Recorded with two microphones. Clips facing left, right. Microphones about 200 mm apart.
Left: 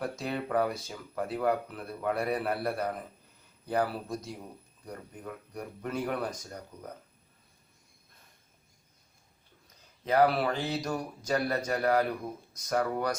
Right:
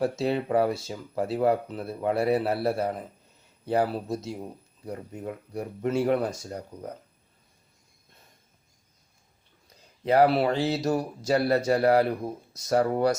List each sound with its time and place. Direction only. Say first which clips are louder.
0.0 s speech: right 8 dB; 30° right (ahead or behind)
10.0 s speech: right 4 dB; 30° right (ahead or behind)